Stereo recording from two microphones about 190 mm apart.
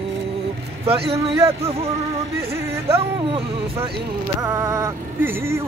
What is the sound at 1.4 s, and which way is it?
Speech, 15° right (ahead or behind).